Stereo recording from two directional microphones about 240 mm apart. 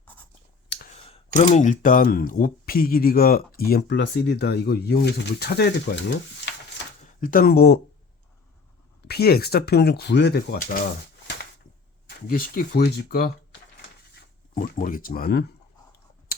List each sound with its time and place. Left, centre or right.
0.7 s clicking: left
1.5 s speech: left
9.0 s speech: left
12.0 s speech: left
14.5 s speech: left